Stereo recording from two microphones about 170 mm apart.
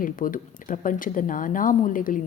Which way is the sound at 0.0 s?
55° left (ahead or behind).